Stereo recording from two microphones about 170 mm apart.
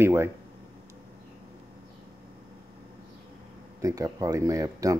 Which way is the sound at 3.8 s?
20° right (ahead or behind).